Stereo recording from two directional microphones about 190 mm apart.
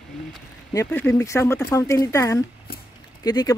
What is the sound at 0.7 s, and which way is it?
Speech, 15° left (ahead or behind).